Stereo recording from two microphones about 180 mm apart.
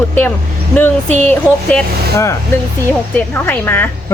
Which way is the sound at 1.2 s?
10° left (ahead or behind).